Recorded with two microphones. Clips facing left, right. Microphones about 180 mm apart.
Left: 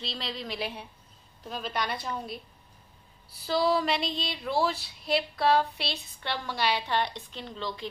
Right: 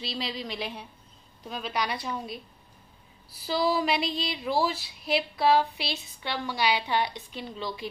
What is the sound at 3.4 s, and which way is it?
Speech, 5° right (ahead or behind).